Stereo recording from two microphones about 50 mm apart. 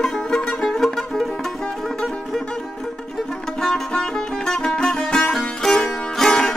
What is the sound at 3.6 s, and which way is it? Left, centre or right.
Music, centre.